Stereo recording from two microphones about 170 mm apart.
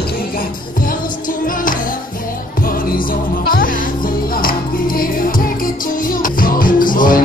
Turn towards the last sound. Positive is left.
turn(degrees=55)  # may be behind; listen again after turning